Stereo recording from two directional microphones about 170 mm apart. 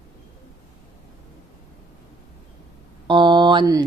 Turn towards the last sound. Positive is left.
turn(degrees=-25)  # may be behind; listen again after turning